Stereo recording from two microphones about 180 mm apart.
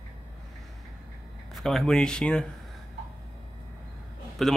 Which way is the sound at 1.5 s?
Centre (ahead or behind).